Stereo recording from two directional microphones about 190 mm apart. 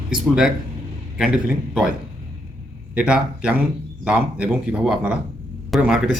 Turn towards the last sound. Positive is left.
turn(degrees=-5)  # may be behind; listen again after turning